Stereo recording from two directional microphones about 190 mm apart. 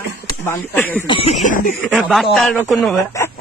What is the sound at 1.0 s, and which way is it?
Speech, 30° left (ahead or behind).